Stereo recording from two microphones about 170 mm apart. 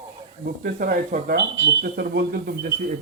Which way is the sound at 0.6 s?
60° right (ahead or behind).